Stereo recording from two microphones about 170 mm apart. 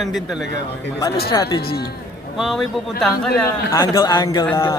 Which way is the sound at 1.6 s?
65° left (ahead or behind).